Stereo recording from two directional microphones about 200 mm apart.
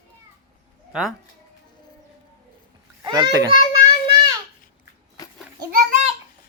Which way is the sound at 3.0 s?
20° right (ahead or behind).